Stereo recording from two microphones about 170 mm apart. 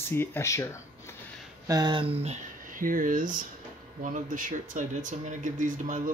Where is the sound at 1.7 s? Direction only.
25° right (ahead or behind).